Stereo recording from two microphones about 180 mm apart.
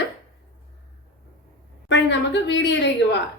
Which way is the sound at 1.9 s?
90° left.